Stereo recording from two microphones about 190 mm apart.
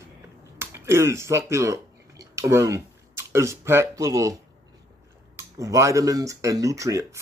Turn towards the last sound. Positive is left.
turn(degrees=-15)  # may be behind; listen again after turning